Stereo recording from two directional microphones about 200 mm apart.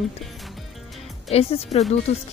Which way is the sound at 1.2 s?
30° left (ahead or behind).